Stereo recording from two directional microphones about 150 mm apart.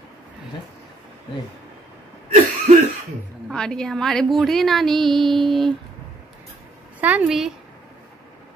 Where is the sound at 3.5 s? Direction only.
5° left (ahead or behind).